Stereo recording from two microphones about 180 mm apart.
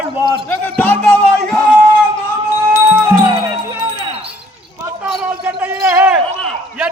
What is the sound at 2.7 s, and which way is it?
Music, 15° right (ahead or behind).